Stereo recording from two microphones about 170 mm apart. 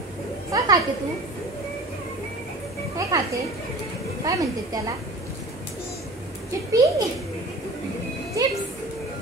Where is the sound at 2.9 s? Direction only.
20° right (ahead or behind).